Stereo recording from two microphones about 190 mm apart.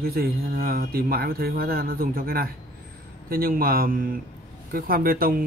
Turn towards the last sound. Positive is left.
turn(degrees=-50)  # may be behind; listen again after turning